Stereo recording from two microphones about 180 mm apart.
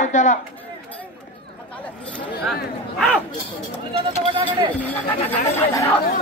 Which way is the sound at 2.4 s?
Centre (ahead or behind).